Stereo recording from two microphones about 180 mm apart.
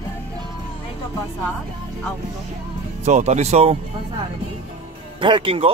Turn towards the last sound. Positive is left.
turn(degrees=-30)  # may be behind; listen again after turning